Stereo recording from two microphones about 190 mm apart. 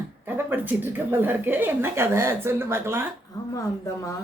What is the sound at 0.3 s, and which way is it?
Speech, 10° right (ahead or behind).